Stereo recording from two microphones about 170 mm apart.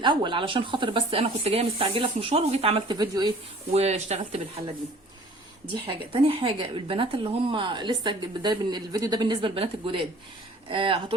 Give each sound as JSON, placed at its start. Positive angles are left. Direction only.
{"t": 0.0, "sound": "speech", "side_deg": -25}
{"t": 3.0, "sound": "a woman's voice", "side_deg": -25}
{"t": 3.7, "sound": "speech", "side_deg": -40}
{"t": 5.7, "sound": "a woman's voice", "side_deg": -30}